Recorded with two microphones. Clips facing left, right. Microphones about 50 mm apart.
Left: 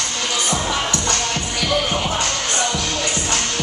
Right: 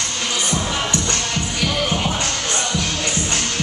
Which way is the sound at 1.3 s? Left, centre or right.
Left.